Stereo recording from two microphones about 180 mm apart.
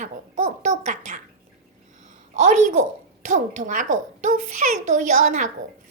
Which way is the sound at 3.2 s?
40° right (ahead or behind).